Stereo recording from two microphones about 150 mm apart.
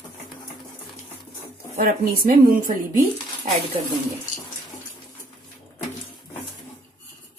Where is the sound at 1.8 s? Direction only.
70° right (ahead or behind).